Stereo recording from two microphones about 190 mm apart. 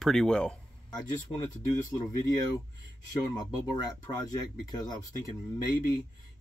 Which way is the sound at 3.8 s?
20° left (ahead or behind).